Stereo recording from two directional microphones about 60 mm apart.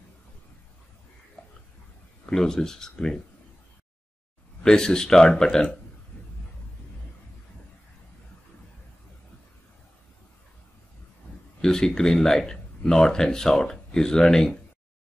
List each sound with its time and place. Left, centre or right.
1.4 s a sound: centre
2.2 s speech: centre
4.6 s speech: centre
11.6 s speech: centre